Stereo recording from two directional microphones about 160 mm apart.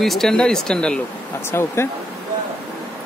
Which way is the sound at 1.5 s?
15° left (ahead or behind).